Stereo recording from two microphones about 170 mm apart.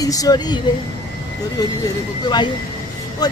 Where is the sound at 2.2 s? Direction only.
25° left (ahead or behind).